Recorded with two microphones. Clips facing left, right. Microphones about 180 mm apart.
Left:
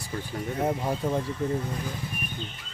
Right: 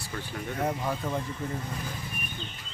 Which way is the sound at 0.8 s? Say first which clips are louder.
Left 3 dB; 15° left (ahead or behind).